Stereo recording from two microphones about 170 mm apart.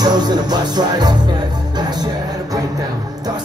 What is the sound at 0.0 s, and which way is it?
Music, 25° right (ahead or behind).